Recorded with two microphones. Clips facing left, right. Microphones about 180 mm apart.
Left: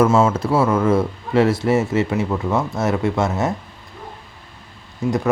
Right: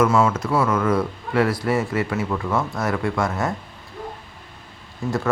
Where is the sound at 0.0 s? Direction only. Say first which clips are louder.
Left 3 dB; 25° left (ahead or behind).